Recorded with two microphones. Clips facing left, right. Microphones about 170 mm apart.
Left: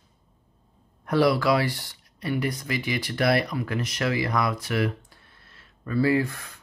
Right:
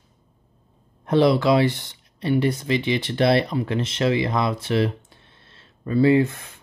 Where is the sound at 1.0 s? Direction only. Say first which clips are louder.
Right 4 dB; 25° right (ahead or behind).